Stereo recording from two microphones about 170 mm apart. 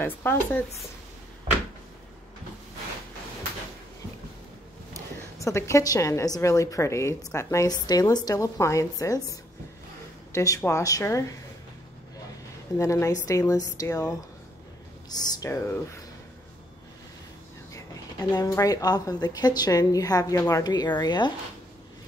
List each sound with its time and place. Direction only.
0.0 s speech: 10° left (ahead or behind)
5.4 s a woman's voice: 15° left (ahead or behind)
12.7 s a woman's voice: 15° left (ahead or behind)
18.3 s a woman's voice: 20° left (ahead or behind)